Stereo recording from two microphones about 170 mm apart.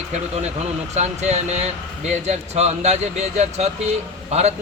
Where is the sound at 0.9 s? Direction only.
40° right (ahead or behind).